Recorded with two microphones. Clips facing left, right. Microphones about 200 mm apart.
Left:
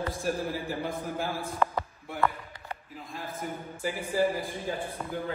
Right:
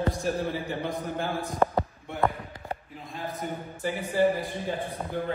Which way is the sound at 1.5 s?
30° right (ahead or behind).